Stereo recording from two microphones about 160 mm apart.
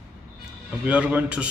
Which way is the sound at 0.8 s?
10° right (ahead or behind).